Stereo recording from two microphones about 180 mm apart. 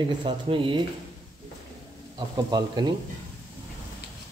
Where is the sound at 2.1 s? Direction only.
25° right (ahead or behind).